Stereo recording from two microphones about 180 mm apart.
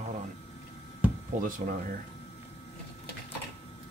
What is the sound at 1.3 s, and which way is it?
Speech, 45° right (ahead or behind).